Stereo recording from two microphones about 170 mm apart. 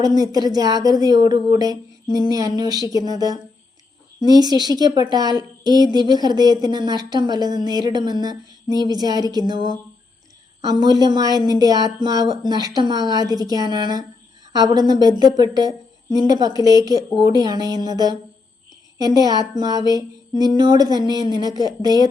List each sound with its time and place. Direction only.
0.0 s a woman's voice: 20° right (ahead or behind)